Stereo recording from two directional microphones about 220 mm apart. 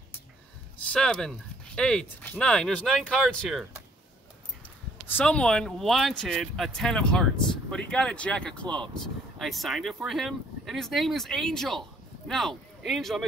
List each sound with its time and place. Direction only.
0.9 s speech: 5° left (ahead or behind)
5.0 s speech: 5° left (ahead or behind)